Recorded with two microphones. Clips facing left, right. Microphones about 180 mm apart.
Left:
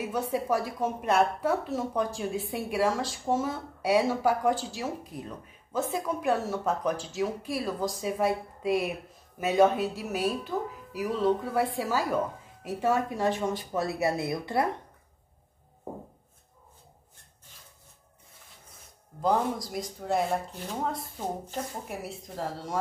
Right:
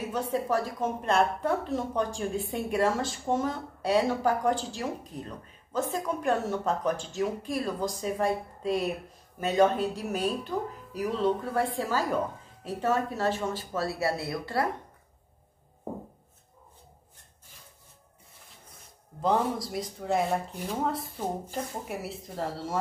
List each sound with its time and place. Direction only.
0.1 s a woman's voice: 10° left (ahead or behind)
19.2 s a woman's voice: centre (ahead or behind)